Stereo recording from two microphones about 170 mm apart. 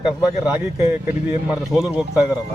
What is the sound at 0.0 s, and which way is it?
Speech, centre (ahead or behind).